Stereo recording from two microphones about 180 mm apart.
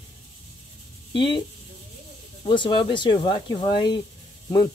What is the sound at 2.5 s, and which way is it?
Speech, 25° left (ahead or behind).